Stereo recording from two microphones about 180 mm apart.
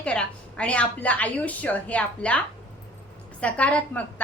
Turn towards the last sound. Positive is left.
turn(degrees=10)  # may be behind; listen again after turning